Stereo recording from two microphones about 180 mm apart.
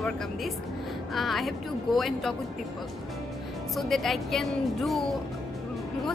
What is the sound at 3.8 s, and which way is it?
A woman's voice, centre (ahead or behind).